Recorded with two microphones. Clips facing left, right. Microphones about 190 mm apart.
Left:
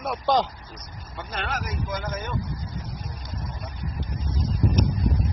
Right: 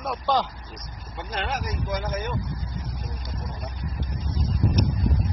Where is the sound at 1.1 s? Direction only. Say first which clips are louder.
Right 1 dB; 15° right (ahead or behind).